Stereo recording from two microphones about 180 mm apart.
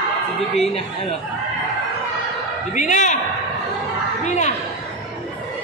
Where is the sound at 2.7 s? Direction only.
45° left (ahead or behind).